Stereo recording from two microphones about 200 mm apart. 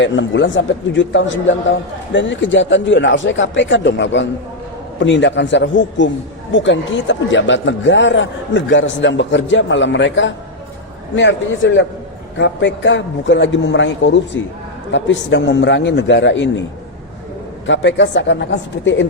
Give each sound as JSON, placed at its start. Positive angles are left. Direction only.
{"t": 0.0, "sound": "a man's voice", "side_deg": 65}
{"t": 17.7, "sound": "a man's voice", "side_deg": 65}